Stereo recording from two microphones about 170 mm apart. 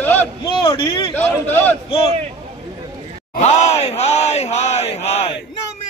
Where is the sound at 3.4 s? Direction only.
40° left (ahead or behind).